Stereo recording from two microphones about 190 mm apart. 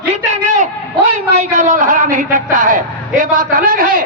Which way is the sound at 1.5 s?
40° right (ahead or behind).